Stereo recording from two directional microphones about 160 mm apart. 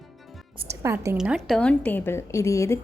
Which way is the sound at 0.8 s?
20° right (ahead or behind).